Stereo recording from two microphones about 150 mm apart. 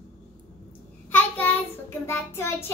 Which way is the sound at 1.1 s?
10° left (ahead or behind).